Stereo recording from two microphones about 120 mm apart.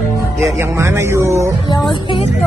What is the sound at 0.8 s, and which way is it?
Speech, 20° right (ahead or behind).